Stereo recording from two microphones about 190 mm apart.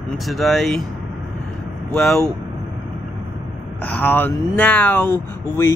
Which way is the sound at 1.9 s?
Centre (ahead or behind).